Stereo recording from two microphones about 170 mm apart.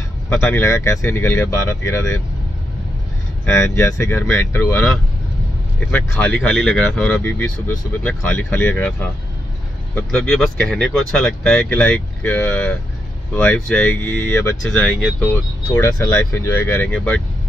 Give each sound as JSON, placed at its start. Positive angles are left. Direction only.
{"t": 0.3, "sound": "speech", "side_deg": 15}
{"t": 3.4, "sound": "speech", "side_deg": 15}